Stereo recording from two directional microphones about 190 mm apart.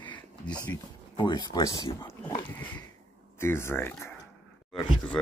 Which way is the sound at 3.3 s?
15° left (ahead or behind).